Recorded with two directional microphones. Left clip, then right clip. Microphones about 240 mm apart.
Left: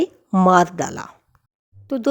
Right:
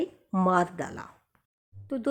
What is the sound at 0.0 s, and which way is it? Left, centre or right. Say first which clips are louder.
Speech: left 10 dB; left.